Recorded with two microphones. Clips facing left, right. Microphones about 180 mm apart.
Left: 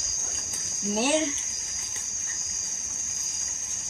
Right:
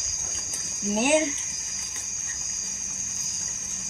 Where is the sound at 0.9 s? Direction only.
15° right (ahead or behind).